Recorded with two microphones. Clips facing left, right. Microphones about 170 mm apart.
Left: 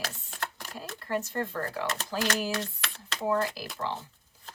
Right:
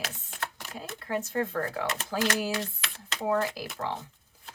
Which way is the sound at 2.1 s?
30° right (ahead or behind).